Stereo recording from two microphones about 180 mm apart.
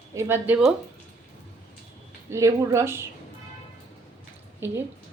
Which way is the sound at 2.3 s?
15° right (ahead or behind).